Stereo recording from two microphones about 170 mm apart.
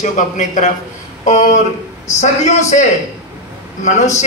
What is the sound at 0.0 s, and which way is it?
A man's voice, 45° left (ahead or behind).